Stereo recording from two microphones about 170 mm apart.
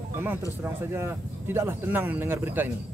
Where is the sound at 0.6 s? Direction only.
15° right (ahead or behind).